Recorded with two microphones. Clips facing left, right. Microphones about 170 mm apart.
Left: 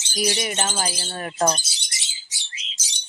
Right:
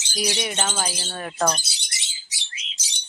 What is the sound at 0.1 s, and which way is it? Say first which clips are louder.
Speech: left 2 dB; 5° left (ahead or behind).